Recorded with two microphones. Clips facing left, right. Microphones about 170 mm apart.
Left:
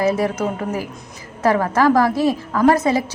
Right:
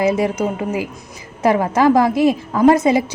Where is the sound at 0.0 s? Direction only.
15° right (ahead or behind).